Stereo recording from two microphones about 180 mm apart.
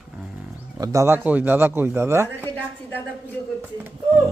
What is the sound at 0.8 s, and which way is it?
Speech, 15° right (ahead or behind).